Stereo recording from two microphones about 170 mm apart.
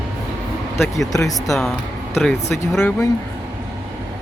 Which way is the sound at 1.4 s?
Centre (ahead or behind).